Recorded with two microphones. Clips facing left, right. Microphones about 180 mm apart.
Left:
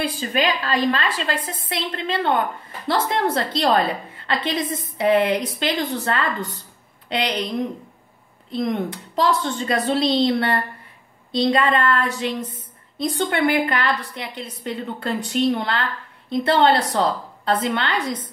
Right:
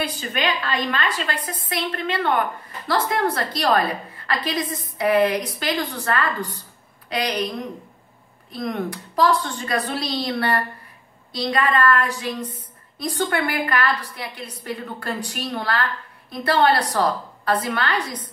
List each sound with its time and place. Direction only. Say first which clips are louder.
0.0 s a woman's voice: left 3 dB; 35° left (ahead or behind)